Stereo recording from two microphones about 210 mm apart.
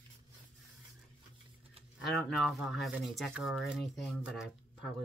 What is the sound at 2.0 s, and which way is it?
Speech, centre (ahead or behind).